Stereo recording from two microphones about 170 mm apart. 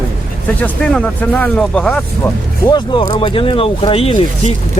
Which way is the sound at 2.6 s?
25° left (ahead or behind).